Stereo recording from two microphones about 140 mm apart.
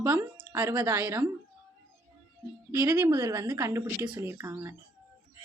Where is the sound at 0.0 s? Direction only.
15° right (ahead or behind).